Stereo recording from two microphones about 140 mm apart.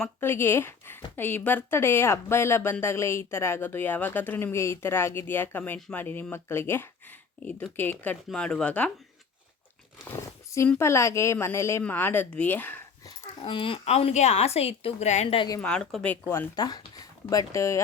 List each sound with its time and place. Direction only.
0.0 s a woman's voice: 15° left (ahead or behind)
10.8 s a woman's voice: 20° left (ahead or behind)
13.4 s a woman's voice: 40° left (ahead or behind); by 15.4 s 55° left (ahead or behind)
15.4 s speech: 25° left (ahead or behind)
15.6 s a woman's voice: 5° left (ahead or behind)
16.2 s speech: 20° left (ahead or behind)